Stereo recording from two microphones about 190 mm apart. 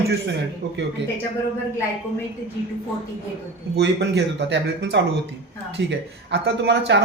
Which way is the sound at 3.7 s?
65° right (ahead or behind).